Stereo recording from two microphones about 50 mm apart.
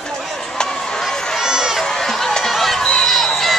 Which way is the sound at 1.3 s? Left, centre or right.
Centre.